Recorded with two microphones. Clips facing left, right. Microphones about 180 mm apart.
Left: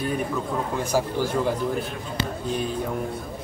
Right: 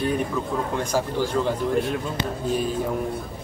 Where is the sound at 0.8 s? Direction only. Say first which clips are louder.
Left 3 dB; 10° left (ahead or behind).